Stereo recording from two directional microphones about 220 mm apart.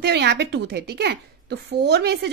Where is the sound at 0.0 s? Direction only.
50° right (ahead or behind).